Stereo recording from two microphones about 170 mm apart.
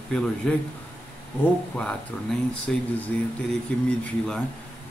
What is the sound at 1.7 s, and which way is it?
Speech, 5° left (ahead or behind).